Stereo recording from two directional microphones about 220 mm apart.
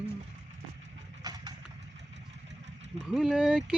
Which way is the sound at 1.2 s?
15° right (ahead or behind).